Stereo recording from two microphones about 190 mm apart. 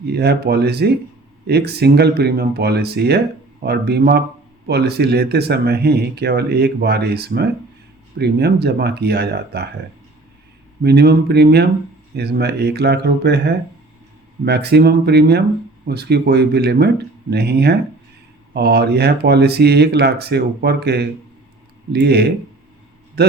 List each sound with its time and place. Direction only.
0.1 s speech: 60° right (ahead or behind)
10.8 s speech: 60° right (ahead or behind)